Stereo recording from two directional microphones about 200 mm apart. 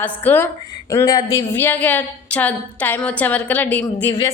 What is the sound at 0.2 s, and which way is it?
A woman's voice, 10° left (ahead or behind).